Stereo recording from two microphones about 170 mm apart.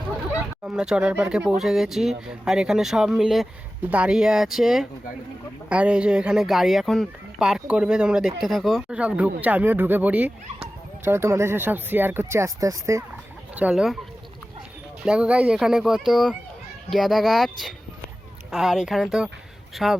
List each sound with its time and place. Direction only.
0.6 s speech: 5° right (ahead or behind)
13.6 s speech: 5° right (ahead or behind)
15.0 s speech: 5° right (ahead or behind)